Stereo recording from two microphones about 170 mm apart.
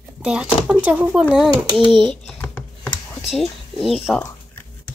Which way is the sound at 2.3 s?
5° left (ahead or behind).